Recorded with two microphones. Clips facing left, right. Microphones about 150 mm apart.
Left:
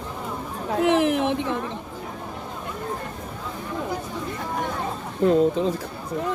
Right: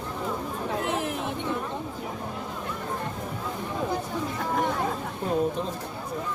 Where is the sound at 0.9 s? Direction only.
90° left.